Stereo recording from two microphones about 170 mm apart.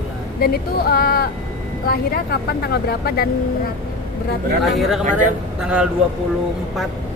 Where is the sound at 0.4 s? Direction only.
65° left (ahead or behind).